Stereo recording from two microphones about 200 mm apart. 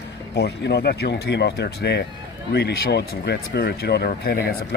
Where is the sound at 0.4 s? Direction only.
55° left (ahead or behind).